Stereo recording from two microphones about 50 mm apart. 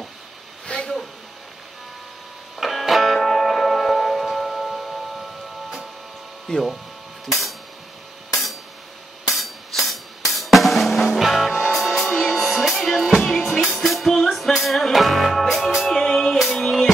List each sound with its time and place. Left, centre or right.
0.7 s a sound: left
2.6 s music: centre
6.5 s speech: centre
7.2 s a sound: centre
9.3 s drum: centre
11.1 s music: centre
11.9 s music: centre
12.2 s music: centre
12.6 s music: centre